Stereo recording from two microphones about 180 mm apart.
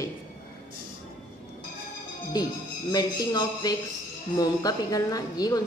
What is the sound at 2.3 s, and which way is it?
A woman's voice, 20° left (ahead or behind).